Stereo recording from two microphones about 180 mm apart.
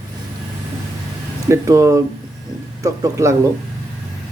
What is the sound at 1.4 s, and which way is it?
Speech, 15° right (ahead or behind).